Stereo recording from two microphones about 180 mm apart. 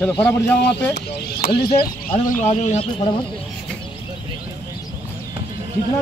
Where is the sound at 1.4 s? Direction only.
55° left (ahead or behind).